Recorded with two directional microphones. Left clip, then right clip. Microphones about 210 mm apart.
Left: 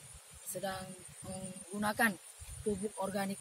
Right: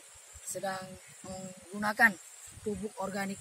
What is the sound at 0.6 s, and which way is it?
Speech, 5° right (ahead or behind).